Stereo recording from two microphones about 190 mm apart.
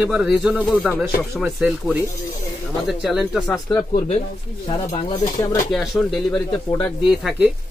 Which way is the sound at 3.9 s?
35° left (ahead or behind).